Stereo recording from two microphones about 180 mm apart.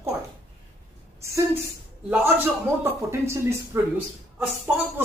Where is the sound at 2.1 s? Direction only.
10° right (ahead or behind).